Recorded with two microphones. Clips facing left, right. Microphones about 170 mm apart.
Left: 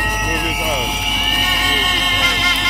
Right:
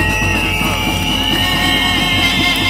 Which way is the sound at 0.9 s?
70° right (ahead or behind).